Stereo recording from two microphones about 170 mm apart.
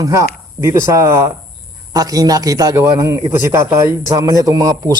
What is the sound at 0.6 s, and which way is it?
A man's voice, 15° right (ahead or behind).